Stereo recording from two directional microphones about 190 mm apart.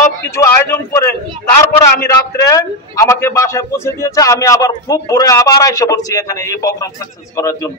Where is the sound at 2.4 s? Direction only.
15° left (ahead or behind).